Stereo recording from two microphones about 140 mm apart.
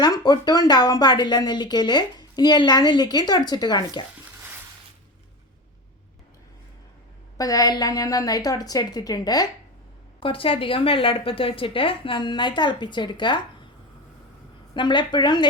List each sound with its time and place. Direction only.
0.0 s speech: 30° left (ahead or behind)
7.3 s speech: 25° left (ahead or behind)
10.2 s a woman's voice: 40° left (ahead or behind)
14.7 s a woman's voice: 35° left (ahead or behind)